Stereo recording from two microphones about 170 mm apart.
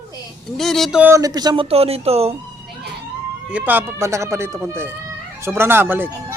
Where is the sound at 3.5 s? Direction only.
10° right (ahead or behind).